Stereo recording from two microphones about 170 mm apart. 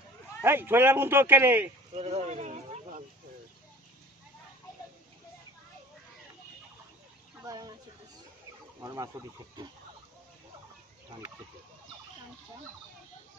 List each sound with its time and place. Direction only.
0.4 s a man's voice: 10° right (ahead or behind)
2.0 s speech: 40° right (ahead or behind)
7.4 s a sound: 20° right (ahead or behind)
8.8 s speech: 20° right (ahead or behind)